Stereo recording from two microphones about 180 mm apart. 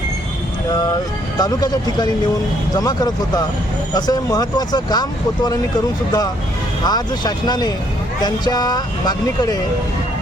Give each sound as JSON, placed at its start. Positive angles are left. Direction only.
{"t": 1.4, "sound": "speech", "side_deg": 20}